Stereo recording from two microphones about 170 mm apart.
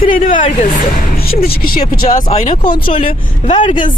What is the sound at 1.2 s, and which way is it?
Speech, 65° left (ahead or behind).